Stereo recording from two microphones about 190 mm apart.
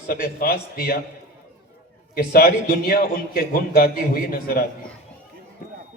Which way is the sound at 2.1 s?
50° left (ahead or behind).